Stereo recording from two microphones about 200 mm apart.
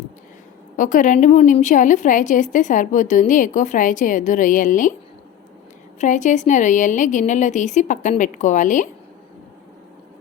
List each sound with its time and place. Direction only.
0.8 s a woman's voice: 40° left (ahead or behind)
6.0 s a woman's voice: 35° left (ahead or behind)